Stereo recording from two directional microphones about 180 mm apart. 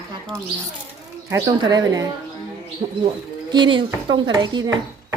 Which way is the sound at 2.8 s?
40° right (ahead or behind).